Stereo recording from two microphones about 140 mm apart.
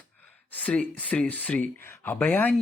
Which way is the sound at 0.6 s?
10° left (ahead or behind).